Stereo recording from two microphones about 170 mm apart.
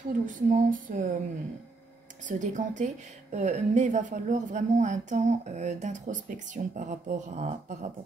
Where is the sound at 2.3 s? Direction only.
45° right (ahead or behind).